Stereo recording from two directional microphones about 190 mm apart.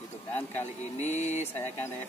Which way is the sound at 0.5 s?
35° left (ahead or behind).